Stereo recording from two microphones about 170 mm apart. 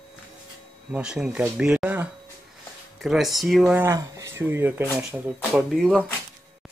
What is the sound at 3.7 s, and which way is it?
Speech, 15° right (ahead or behind).